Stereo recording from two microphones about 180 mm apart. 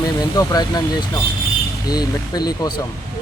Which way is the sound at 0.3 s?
20° left (ahead or behind).